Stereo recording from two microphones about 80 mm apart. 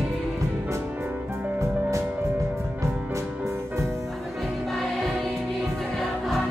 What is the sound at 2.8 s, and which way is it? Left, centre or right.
Music, right.